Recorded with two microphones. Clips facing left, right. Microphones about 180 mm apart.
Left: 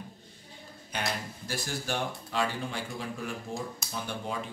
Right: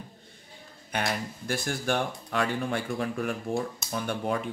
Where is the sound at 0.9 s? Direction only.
55° right (ahead or behind).